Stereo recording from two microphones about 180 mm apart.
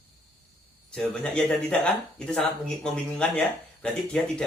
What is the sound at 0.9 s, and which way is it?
Speech, 5° left (ahead or behind).